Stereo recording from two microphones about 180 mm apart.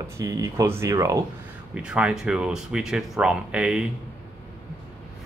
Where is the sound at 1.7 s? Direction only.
5° right (ahead or behind).